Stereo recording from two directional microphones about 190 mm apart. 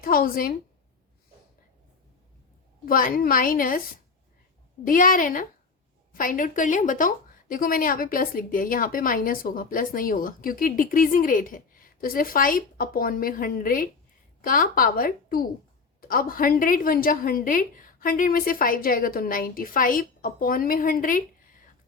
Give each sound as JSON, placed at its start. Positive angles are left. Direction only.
{"t": 0.0, "sound": "a woman's voice", "side_deg": 50}
{"t": 2.8, "sound": "speech", "side_deg": 50}
{"t": 4.9, "sound": "speech", "side_deg": 45}